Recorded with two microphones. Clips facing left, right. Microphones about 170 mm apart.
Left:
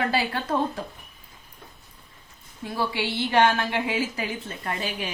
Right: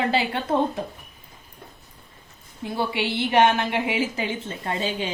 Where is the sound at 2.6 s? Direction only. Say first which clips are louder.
Right 2 dB; 25° right (ahead or behind).